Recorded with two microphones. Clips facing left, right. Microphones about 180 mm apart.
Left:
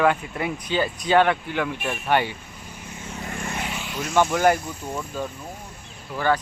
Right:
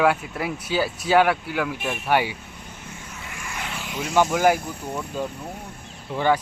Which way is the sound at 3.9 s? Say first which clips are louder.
Right 1 dB; 10° right (ahead or behind).